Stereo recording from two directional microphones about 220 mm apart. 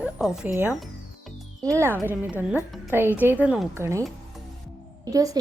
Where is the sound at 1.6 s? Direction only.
15° right (ahead or behind).